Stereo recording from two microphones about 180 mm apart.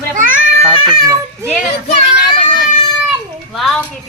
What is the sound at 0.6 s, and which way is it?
Speech, 25° right (ahead or behind).